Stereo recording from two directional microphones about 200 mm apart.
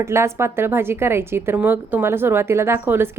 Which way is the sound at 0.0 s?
15° right (ahead or behind).